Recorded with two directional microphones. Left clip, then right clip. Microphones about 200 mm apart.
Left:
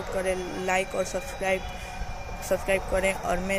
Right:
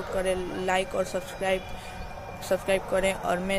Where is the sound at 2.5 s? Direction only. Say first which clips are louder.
Even; 10° right (ahead or behind).